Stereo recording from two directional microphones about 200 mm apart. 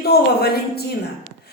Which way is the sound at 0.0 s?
50° left (ahead or behind).